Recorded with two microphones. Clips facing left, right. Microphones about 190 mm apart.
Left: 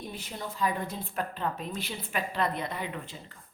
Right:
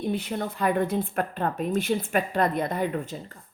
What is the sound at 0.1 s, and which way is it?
A woman's voice, 60° right (ahead or behind).